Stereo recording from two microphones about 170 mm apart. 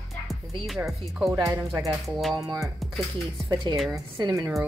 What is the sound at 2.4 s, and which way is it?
Music, 20° right (ahead or behind).